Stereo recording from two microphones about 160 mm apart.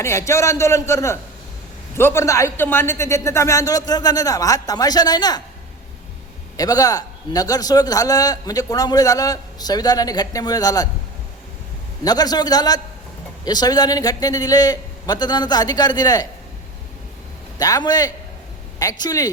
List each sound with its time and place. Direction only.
0.0 s a man's voice: 15° left (ahead or behind)
6.6 s a man's voice: 25° left (ahead or behind)
12.0 s a man's voice: 25° left (ahead or behind)
17.6 s a man's voice: 25° left (ahead or behind)